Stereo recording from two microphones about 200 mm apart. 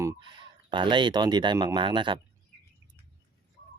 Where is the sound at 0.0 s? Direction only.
20° right (ahead or behind).